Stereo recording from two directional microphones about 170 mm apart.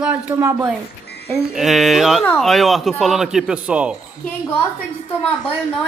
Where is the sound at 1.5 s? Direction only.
Centre (ahead or behind).